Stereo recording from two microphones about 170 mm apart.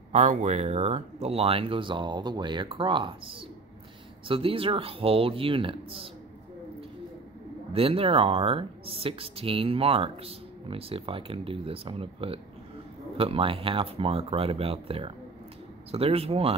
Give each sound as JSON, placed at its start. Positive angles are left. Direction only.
{"t": 0.1, "sound": "speech", "side_deg": -45}
{"t": 7.7, "sound": "speech", "side_deg": -35}